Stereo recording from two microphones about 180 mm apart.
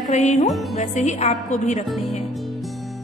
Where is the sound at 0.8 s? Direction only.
40° left (ahead or behind).